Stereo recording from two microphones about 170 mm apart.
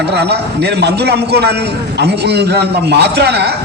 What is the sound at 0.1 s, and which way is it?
A man's voice, 80° right.